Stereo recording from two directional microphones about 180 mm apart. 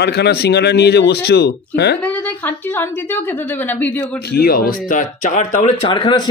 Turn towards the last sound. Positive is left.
turn(degrees=25)  # may be behind; listen again after turning